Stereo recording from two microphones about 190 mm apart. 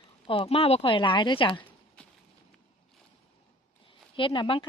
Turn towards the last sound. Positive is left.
turn(degrees=25)  # may be behind; listen again after turning